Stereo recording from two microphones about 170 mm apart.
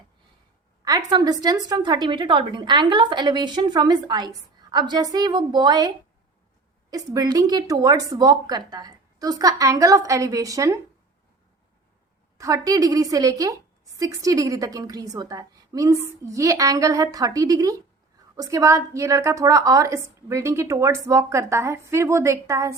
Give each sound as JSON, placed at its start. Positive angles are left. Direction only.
{"t": 0.9, "sound": "a woman's voice", "side_deg": -25}
{"t": 6.9, "sound": "a woman's voice", "side_deg": -20}
{"t": 12.4, "sound": "a woman's voice", "side_deg": -20}